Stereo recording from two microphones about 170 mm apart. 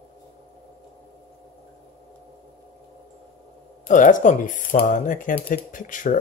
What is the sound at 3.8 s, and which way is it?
Speech, 50° left (ahead or behind).